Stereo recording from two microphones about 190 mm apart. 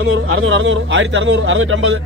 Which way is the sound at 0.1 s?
90° right.